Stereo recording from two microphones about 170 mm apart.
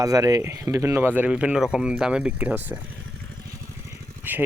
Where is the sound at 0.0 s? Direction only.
20° right (ahead or behind).